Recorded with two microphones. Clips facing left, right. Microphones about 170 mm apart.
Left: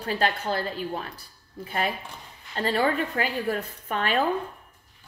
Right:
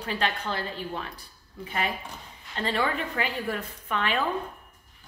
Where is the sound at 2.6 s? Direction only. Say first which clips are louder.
Left 4 dB; 40° left (ahead or behind).